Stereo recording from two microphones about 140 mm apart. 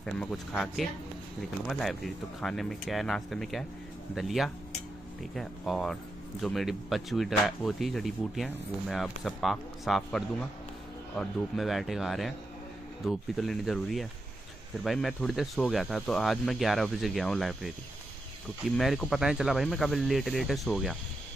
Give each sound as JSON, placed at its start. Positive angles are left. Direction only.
{"t": 0.0, "sound": "speech", "side_deg": 10}
{"t": 18.8, "sound": "speech", "side_deg": 0}